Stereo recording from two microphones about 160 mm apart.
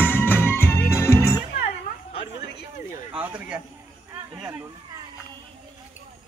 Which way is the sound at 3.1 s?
10° right (ahead or behind).